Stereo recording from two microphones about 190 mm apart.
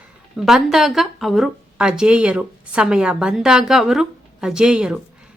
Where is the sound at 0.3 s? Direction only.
Centre (ahead or behind).